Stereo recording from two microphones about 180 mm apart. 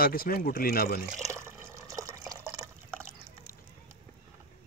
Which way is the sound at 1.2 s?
15° right (ahead or behind).